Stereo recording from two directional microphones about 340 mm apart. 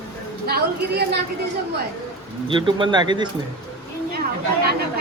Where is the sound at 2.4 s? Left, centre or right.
Centre.